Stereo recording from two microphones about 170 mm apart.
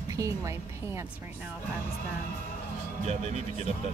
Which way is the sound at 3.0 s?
40° right (ahead or behind).